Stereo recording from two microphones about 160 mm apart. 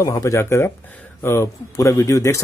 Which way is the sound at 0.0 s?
20° left (ahead or behind).